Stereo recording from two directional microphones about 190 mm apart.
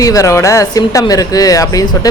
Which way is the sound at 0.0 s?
15° left (ahead or behind).